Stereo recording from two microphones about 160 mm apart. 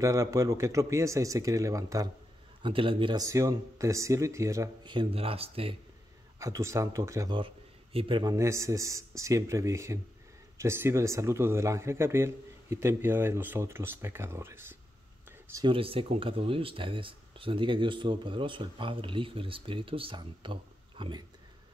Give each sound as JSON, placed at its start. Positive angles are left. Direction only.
{"t": 0.0, "sound": "speech", "side_deg": -20}
{"t": 2.6, "sound": "speech", "side_deg": -35}
{"t": 6.4, "sound": "speech", "side_deg": -20}
{"t": 7.3, "sound": "speech", "side_deg": -35}
{"t": 15.6, "sound": "speech", "side_deg": -35}